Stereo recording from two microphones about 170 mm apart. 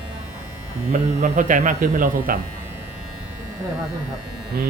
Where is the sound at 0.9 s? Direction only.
45° right (ahead or behind).